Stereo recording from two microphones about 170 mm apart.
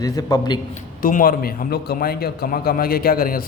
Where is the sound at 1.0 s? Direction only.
55° left (ahead or behind).